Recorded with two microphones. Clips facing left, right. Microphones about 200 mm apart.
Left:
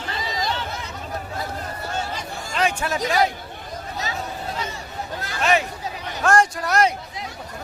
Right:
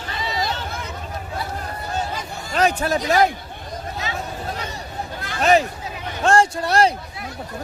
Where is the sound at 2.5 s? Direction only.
40° right (ahead or behind).